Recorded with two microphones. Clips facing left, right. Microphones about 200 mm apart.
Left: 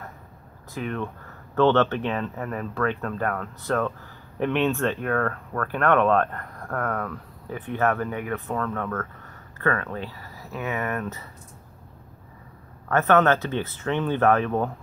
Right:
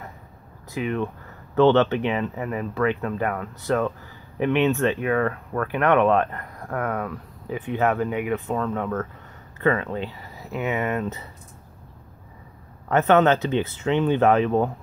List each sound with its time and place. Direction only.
0.7 s speech: 10° right (ahead or behind)
12.8 s speech: 20° right (ahead or behind)